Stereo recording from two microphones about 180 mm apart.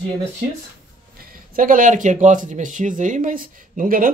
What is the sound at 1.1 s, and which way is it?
A man's voice, 50° right (ahead or behind).